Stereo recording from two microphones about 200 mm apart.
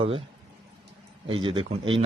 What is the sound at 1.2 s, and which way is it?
Speech, 25° right (ahead or behind).